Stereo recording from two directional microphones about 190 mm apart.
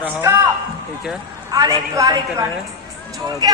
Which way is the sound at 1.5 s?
20° right (ahead or behind).